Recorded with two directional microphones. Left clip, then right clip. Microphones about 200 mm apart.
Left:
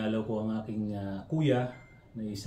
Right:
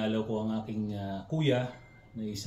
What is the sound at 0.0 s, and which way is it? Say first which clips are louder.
Speech: right 1 dB; 10° left (ahead or behind).